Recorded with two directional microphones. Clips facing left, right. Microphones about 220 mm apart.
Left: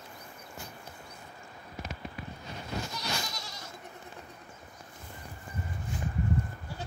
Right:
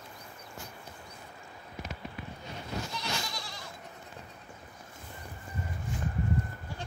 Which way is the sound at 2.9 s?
40° left (ahead or behind).